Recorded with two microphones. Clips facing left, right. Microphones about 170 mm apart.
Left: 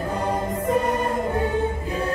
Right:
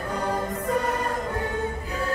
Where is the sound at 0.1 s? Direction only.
25° left (ahead or behind).